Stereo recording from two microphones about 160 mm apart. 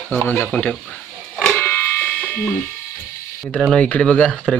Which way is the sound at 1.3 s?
5° left (ahead or behind).